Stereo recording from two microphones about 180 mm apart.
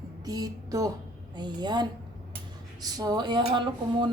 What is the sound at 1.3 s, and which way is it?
A woman's voice, 25° right (ahead or behind).